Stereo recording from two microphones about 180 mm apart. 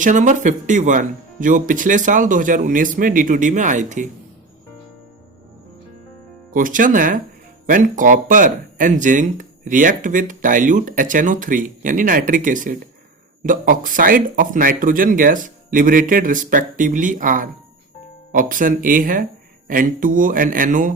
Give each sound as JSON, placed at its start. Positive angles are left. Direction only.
{"t": 0.0, "sound": "speech", "side_deg": -45}
{"t": 6.5, "sound": "speech", "side_deg": -50}